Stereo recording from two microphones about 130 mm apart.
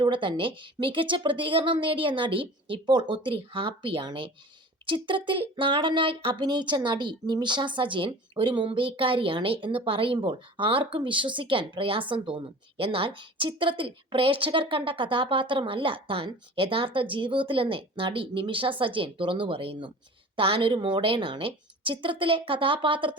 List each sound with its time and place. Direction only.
0.0 s speech: 40° right (ahead or behind)